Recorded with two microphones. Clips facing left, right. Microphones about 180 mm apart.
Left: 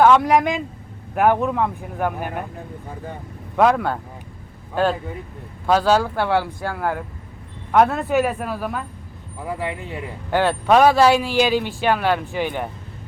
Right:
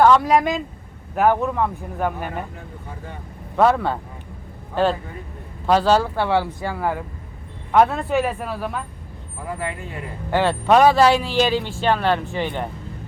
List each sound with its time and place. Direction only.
0.0 s speech: centre (ahead or behind)
1.3 s speech: 10° left (ahead or behind)
4.7 s speech: 5° left (ahead or behind)
9.6 s speech: 20° left (ahead or behind)
10.7 s speech: centre (ahead or behind)